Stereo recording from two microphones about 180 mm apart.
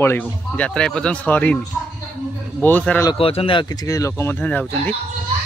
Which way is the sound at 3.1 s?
30° left (ahead or behind).